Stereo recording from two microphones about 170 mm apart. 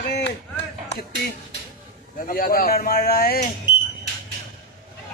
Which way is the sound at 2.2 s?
55° left (ahead or behind).